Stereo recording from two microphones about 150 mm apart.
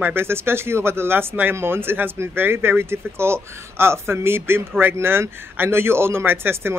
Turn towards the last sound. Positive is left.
turn(degrees=-15)  # may be behind; listen again after turning